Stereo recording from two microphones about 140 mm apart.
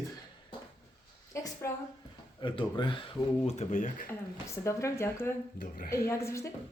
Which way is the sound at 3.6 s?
65° left (ahead or behind).